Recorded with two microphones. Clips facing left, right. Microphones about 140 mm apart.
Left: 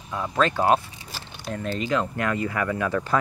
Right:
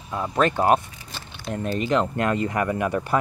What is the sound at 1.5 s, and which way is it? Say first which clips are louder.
Speech: right 3 dB; 20° right (ahead or behind).